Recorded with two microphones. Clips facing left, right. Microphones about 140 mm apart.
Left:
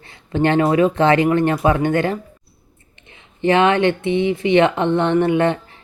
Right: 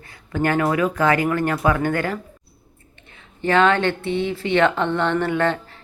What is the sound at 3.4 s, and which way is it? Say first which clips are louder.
Speech: left 3 dB; 20° left (ahead or behind).